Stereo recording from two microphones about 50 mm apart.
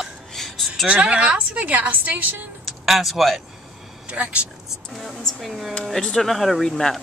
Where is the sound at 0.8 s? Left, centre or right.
Right.